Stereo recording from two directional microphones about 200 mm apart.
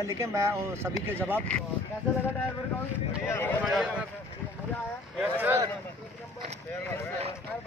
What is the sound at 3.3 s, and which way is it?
Speech, 10° left (ahead or behind).